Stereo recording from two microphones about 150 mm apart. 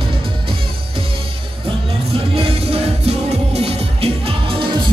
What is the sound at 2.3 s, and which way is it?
Music, 40° right (ahead or behind).